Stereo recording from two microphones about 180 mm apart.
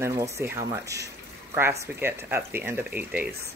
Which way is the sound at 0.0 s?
15° right (ahead or behind).